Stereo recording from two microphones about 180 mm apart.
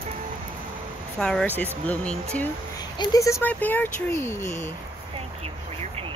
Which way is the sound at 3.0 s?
20° left (ahead or behind).